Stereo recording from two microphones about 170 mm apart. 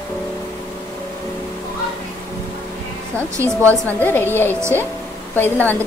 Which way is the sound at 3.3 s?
15° right (ahead or behind).